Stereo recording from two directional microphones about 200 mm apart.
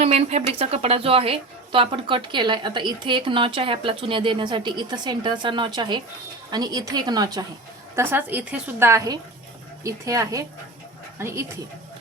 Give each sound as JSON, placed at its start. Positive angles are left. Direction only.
{"t": 0.0, "sound": "a woman's voice", "side_deg": -30}
{"t": 7.9, "sound": "a woman's voice", "side_deg": -10}